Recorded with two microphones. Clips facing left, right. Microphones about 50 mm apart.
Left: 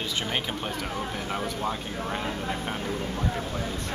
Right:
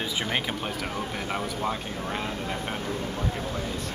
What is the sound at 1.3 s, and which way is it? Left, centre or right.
Speech, centre.